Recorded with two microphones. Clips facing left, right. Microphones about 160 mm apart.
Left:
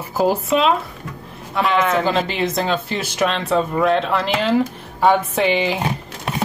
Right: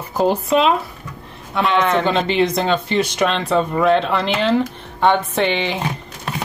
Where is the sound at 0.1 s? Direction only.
5° left (ahead or behind).